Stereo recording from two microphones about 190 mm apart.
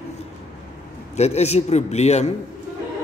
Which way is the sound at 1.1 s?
35° left (ahead or behind).